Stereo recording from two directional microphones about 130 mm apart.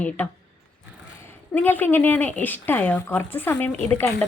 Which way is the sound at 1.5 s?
15° left (ahead or behind).